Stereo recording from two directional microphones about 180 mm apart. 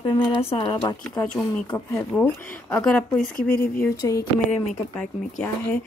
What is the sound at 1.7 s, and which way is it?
Speech, 15° left (ahead or behind).